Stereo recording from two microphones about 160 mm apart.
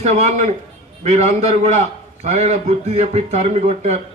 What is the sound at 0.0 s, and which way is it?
A man's voice, 45° right (ahead or behind).